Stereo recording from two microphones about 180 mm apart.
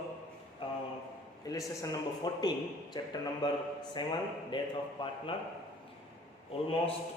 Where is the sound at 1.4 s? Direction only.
20° left (ahead or behind).